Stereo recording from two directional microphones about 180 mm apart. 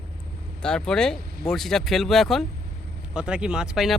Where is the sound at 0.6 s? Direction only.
5° left (ahead or behind).